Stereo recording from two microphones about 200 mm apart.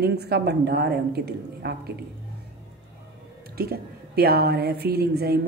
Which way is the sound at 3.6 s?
50° right (ahead or behind).